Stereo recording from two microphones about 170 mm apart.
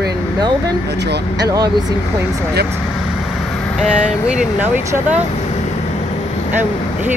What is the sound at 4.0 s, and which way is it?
Speech, 5° right (ahead or behind).